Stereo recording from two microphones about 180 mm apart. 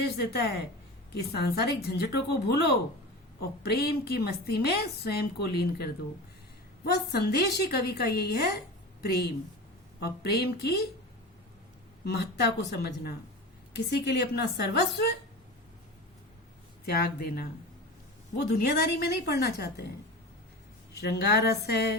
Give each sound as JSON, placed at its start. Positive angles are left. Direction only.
{"t": 0.0, "sound": "a woman's voice", "side_deg": 60}
{"t": 12.0, "sound": "a woman's voice", "side_deg": 60}
{"t": 16.8, "sound": "a woman's voice", "side_deg": 60}
{"t": 21.0, "sound": "a woman's voice", "side_deg": 65}